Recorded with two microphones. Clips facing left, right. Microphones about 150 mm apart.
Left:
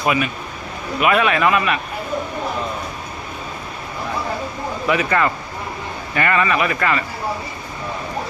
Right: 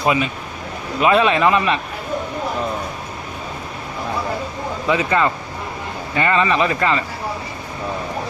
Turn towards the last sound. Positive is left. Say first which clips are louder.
# right 1 dB
turn(degrees=-25)  # may be behind; listen again after turning